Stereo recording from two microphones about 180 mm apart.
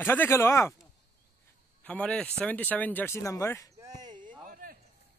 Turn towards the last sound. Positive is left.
turn(degrees=-25)  # may be behind; listen again after turning